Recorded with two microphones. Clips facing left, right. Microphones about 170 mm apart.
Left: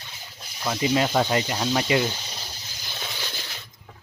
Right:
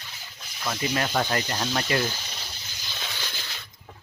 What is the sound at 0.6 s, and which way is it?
Speech, 20° left (ahead or behind).